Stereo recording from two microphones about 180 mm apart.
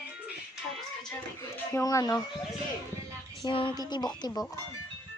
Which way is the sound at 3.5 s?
25° left (ahead or behind).